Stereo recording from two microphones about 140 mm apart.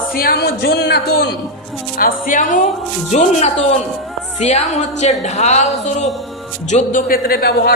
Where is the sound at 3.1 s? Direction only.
55° left (ahead or behind).